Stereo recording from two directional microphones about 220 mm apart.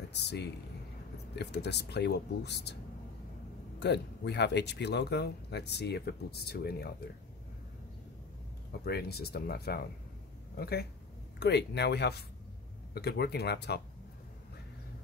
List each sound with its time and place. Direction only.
0.1 s speech: 50° left (ahead or behind)
3.8 s speech: 50° left (ahead or behind)
8.8 s speech: 45° left (ahead or behind)